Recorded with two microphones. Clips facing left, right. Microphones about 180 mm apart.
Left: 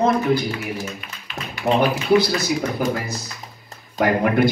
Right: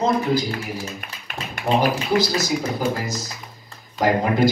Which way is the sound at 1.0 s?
50° right (ahead or behind).